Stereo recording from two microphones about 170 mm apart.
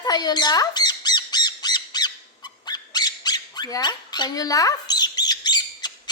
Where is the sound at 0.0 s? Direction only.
25° left (ahead or behind).